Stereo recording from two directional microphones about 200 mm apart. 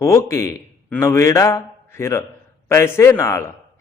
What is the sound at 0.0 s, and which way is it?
A man's voice, 15° left (ahead or behind).